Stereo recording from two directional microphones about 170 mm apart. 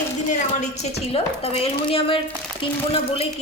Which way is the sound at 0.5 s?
40° left (ahead or behind).